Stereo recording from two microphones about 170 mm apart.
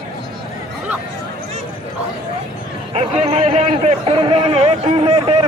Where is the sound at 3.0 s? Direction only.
35° right (ahead or behind).